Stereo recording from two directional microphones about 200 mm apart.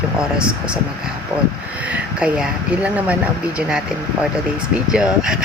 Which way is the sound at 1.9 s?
5° right (ahead or behind).